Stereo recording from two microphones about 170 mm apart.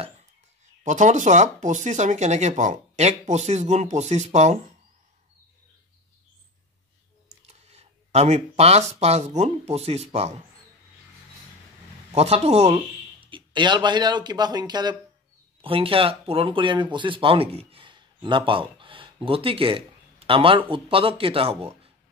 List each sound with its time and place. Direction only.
0.8 s speech: 45° right (ahead or behind)
7.2 s a sound: 40° right (ahead or behind)
9.0 s speech: 40° right (ahead or behind)
12.1 s speech: 40° right (ahead or behind)